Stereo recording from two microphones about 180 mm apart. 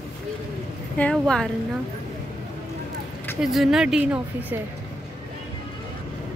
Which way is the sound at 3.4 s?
Centre (ahead or behind).